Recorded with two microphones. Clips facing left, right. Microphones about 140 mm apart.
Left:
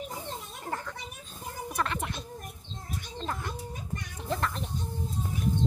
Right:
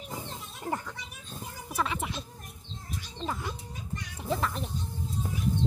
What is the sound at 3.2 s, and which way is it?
Bird, 5° right (ahead or behind).